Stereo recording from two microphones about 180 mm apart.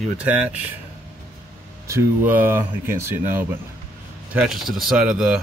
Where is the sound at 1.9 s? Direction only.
10° right (ahead or behind).